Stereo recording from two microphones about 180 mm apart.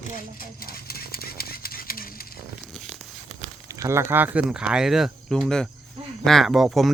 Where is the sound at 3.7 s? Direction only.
15° right (ahead or behind); by 6.9 s centre (ahead or behind).